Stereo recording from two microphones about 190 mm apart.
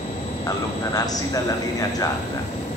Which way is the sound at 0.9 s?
20° left (ahead or behind).